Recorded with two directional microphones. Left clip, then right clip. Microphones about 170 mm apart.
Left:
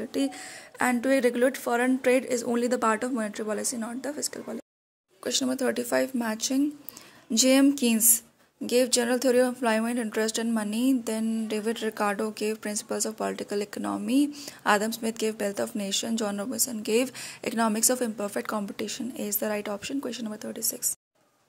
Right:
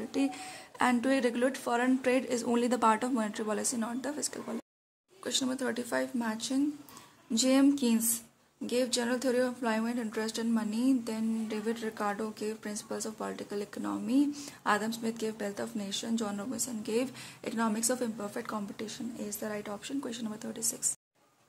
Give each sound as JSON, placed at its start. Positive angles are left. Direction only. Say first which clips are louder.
{"t": 0.1, "sound": "speech", "louder": "left 1 dB", "side_deg": 20}
{"t": 5.2, "sound": "a woman's voice", "louder": "left 6 dB", "side_deg": 35}